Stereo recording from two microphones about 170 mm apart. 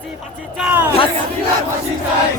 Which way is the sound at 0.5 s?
10° right (ahead or behind).